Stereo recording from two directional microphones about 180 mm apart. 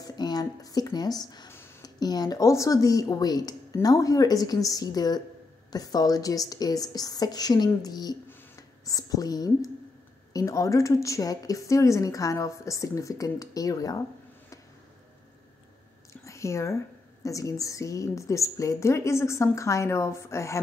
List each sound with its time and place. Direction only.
0.0 s a woman's voice: 20° left (ahead or behind)
16.1 s a sound: 15° left (ahead or behind)
17.2 s a woman's voice: 20° left (ahead or behind)